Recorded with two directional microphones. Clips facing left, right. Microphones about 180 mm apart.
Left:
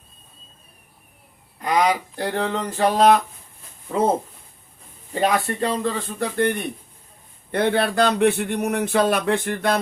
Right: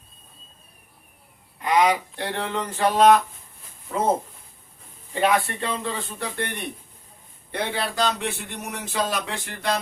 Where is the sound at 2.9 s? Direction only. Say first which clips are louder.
Even; 35° left (ahead or behind).